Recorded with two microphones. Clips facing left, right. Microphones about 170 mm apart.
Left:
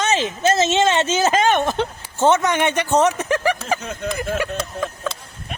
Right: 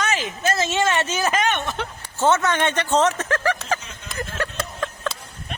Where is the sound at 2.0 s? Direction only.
15° left (ahead or behind).